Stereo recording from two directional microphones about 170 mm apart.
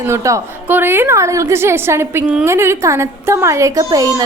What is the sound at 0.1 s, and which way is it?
A woman's voice, 20° right (ahead or behind).